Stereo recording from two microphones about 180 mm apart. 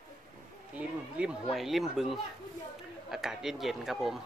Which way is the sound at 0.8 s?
5° right (ahead or behind).